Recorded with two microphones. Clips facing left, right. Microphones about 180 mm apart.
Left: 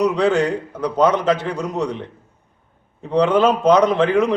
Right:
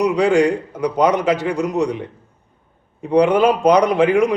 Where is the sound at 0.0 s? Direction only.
10° right (ahead or behind).